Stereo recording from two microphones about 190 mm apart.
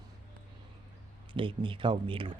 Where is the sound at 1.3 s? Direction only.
25° right (ahead or behind).